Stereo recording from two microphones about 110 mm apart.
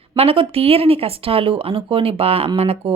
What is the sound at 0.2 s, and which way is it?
Speech, 60° right (ahead or behind).